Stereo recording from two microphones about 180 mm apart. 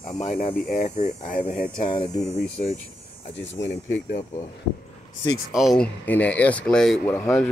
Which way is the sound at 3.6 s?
20° left (ahead or behind).